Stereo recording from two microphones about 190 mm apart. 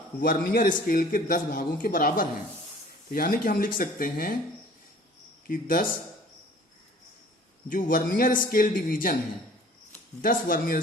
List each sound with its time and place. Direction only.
0.2 s a man's voice: 50° left (ahead or behind)
5.5 s a man's voice: 45° left (ahead or behind)
7.7 s a man's voice: 45° left (ahead or behind)
10.2 s a man's voice: 50° left (ahead or behind)